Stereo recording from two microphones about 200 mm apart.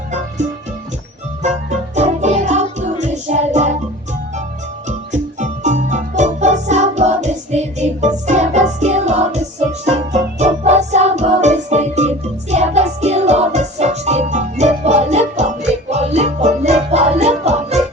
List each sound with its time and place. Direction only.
2.0 s music: 35° right (ahead or behind)
5.4 s music: 35° right (ahead or behind)